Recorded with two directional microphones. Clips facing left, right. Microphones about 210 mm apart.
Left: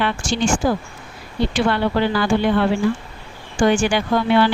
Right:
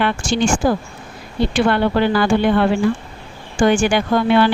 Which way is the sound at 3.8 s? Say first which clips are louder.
Right 2 dB; 55° right (ahead or behind).